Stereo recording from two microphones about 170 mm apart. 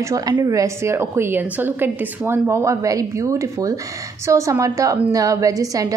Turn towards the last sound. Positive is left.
turn(degrees=-20)  # may be behind; listen again after turning